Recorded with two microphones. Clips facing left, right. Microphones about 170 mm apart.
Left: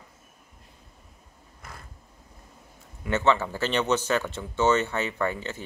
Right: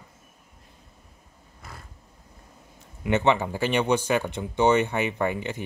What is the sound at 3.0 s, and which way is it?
Speech, 15° right (ahead or behind).